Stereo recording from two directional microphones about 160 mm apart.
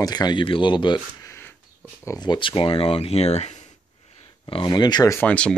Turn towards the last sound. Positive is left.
turn(degrees=5)  # may be behind; listen again after turning